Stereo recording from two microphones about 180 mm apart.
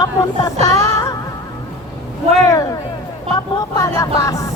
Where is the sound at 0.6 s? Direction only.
20° left (ahead or behind).